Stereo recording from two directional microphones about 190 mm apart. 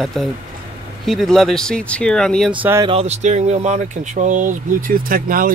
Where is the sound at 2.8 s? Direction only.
35° right (ahead or behind); by 5.5 s 50° right (ahead or behind).